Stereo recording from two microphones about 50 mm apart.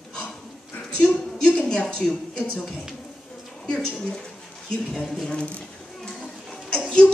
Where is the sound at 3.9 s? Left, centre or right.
Centre.